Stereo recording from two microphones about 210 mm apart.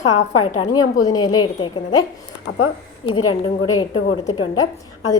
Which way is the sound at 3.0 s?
20° left (ahead or behind).